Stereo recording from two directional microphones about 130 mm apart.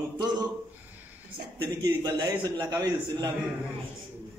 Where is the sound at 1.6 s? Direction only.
30° right (ahead or behind).